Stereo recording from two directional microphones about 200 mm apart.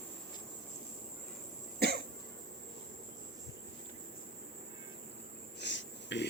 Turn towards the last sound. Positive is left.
turn(degrees=60)  # may be behind; listen again after turning